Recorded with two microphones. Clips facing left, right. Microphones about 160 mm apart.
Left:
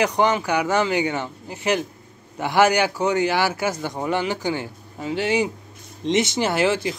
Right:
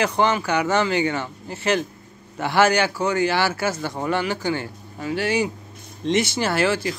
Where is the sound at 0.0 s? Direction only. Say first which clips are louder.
Left 1 dB; 15° left (ahead or behind).